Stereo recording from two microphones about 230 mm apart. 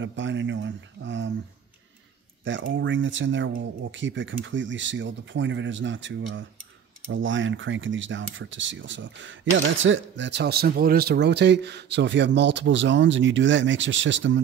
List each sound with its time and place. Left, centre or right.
0.0 s speech: right
2.4 s speech: right